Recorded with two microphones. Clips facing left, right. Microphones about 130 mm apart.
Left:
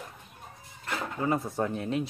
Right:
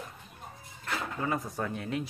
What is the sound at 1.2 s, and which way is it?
Speech, 30° left (ahead or behind).